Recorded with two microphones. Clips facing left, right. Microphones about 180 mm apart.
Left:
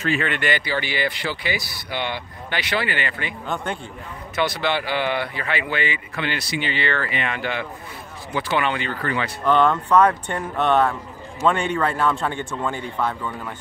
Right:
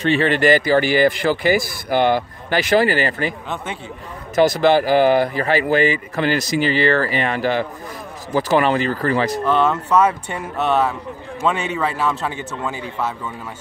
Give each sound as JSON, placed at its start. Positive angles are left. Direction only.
{"t": 0.0, "sound": "speech", "side_deg": -35}
{"t": 4.4, "sound": "speech", "side_deg": -40}
{"t": 9.4, "sound": "a man's voice", "side_deg": -5}